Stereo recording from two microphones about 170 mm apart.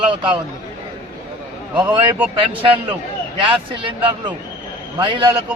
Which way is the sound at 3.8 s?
25° right (ahead or behind).